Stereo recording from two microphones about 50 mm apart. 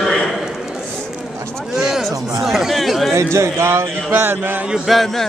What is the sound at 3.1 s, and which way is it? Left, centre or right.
Speech, right.